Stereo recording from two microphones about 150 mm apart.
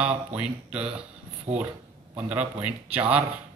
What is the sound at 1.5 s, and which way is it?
Speech, 45° right (ahead or behind).